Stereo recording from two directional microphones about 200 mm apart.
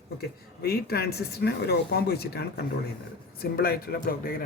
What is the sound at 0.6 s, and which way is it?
Speech, 50° left (ahead or behind).